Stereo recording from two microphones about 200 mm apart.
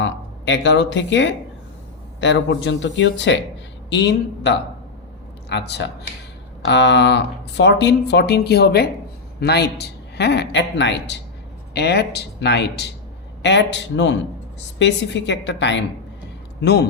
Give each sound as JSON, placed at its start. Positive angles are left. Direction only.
{"t": 0.0, "sound": "speech", "side_deg": 65}